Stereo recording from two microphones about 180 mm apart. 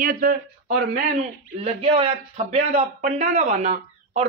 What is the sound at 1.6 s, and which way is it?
A man's voice, 30° right (ahead or behind).